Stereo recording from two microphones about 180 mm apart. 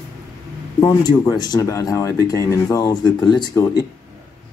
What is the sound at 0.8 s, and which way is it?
Speech, 20° left (ahead or behind).